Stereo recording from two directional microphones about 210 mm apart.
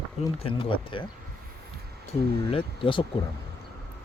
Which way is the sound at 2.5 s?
25° left (ahead or behind).